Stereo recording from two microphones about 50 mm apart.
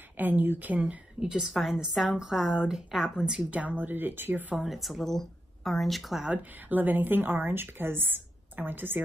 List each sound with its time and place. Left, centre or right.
0.2 s speech: right
1.2 s a woman's voice: centre
3.2 s a woman's voice: centre
3.8 s speech: right
4.6 s speech: centre
6.3 s speech: right